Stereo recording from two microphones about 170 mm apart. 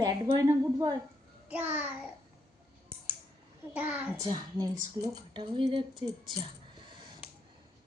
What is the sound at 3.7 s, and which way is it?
Child singing, 10° right (ahead or behind).